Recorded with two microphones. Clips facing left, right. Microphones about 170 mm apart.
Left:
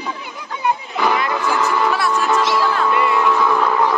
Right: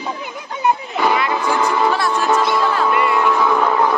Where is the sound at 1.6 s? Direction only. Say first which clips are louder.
Right 2 dB; 30° right (ahead or behind).